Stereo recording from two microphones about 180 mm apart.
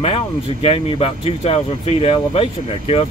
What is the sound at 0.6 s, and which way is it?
Speech, 35° left (ahead or behind).